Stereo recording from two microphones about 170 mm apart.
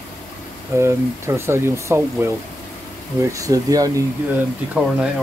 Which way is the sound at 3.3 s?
20° right (ahead or behind).